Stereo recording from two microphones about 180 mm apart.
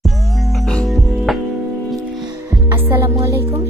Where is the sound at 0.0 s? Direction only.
Centre (ahead or behind).